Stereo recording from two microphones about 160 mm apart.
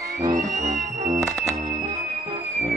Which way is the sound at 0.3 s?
55° right (ahead or behind).